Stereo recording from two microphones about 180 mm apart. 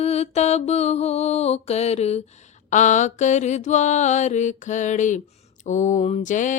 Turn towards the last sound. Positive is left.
turn(degrees=45)  # may be behind; listen again after turning